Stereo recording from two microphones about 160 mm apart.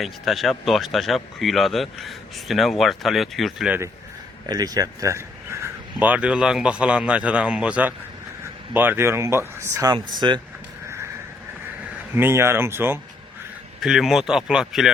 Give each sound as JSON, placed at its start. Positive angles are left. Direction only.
{"t": 0.0, "sound": "speech", "side_deg": 0}
{"t": 4.4, "sound": "speech", "side_deg": -25}
{"t": 12.1, "sound": "speech", "side_deg": -15}
{"t": 13.8, "sound": "speech", "side_deg": 0}